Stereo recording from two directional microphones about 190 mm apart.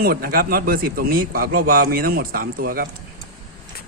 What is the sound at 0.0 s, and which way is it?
A man's voice, 50° right (ahead or behind).